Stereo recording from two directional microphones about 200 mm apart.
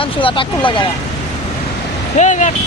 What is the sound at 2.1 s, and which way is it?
Speech, 35° left (ahead or behind).